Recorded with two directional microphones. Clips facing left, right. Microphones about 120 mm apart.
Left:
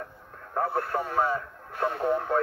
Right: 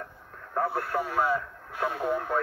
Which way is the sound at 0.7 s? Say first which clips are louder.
Left 1 dB; 30° left (ahead or behind).